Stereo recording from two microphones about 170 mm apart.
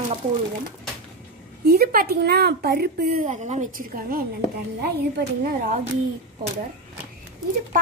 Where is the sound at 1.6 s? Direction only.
65° right (ahead or behind).